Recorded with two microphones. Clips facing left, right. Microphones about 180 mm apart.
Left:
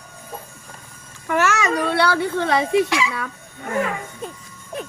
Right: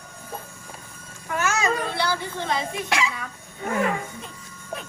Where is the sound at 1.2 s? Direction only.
75° left (ahead or behind).